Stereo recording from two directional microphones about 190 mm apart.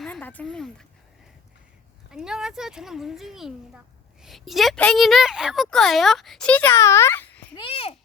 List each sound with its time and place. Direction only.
0.0 s a sound: 5° left (ahead or behind)
2.1 s a woman's voice: 5° right (ahead or behind)
7.5 s a child's voice: 25° left (ahead or behind)